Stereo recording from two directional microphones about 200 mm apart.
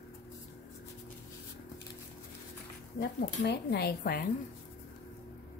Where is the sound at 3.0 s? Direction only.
55° left (ahead or behind).